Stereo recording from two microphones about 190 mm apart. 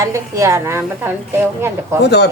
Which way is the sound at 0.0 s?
15° right (ahead or behind).